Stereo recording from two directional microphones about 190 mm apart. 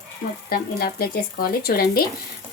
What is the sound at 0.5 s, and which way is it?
Speech, 50° left (ahead or behind).